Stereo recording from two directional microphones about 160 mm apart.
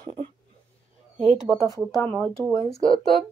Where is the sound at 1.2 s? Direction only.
35° right (ahead or behind).